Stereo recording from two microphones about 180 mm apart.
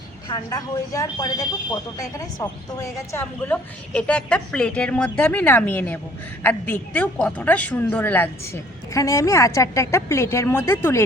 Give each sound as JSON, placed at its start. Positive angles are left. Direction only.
{"t": 0.3, "sound": "speech", "side_deg": 20}